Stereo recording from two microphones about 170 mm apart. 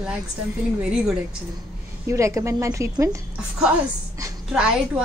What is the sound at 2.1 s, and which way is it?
A woman's voice, 15° right (ahead or behind).